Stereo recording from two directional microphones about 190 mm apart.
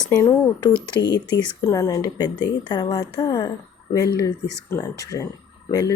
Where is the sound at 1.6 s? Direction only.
15° left (ahead or behind).